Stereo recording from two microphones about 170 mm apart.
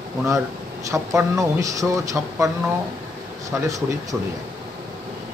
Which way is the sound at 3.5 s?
20° right (ahead or behind).